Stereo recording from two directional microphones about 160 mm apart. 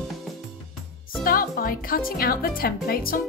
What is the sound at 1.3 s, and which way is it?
Speech, 65° left (ahead or behind).